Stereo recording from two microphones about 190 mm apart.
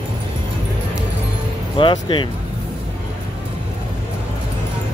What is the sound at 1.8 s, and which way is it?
Music, 25° left (ahead or behind).